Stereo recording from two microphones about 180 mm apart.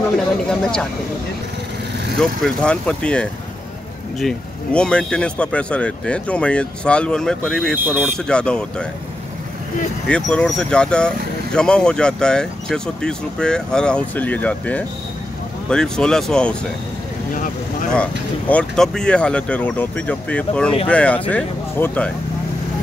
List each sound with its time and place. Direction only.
0.5 s speech: 5° left (ahead or behind)
2.1 s speech: 5° left (ahead or behind)
7.7 s speech: 10° right (ahead or behind)
8.3 s speech: 5° left (ahead or behind)
10.0 s speech: 5° left (ahead or behind)
17.3 s speech: 45° left (ahead or behind)
18.5 s speech: 5° left (ahead or behind)